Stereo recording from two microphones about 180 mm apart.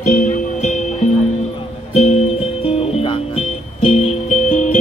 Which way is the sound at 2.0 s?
35° left (ahead or behind).